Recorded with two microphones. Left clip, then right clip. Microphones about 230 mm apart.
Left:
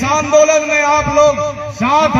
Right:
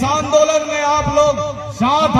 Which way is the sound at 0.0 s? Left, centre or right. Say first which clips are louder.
Left 3 dB; right.